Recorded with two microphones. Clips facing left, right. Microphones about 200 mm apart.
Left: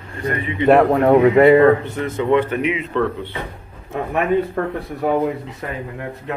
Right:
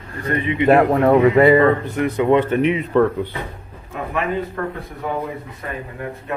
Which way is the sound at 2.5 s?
40° right (ahead or behind).